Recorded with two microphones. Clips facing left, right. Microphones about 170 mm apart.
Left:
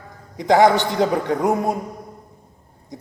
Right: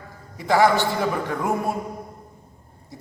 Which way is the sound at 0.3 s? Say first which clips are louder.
Left 4 dB; 20° left (ahead or behind).